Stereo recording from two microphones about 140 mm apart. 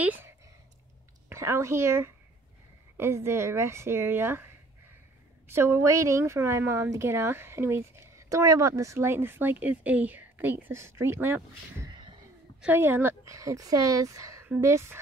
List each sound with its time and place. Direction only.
0.0 s speech: 10° right (ahead or behind)
1.3 s speech: 20° right (ahead or behind)
5.5 s speech: 20° right (ahead or behind)